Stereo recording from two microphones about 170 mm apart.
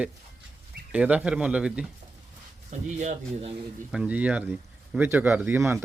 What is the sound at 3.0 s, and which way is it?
Speech, 40° right (ahead or behind).